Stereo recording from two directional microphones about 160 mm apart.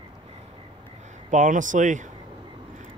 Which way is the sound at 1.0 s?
50° right (ahead or behind).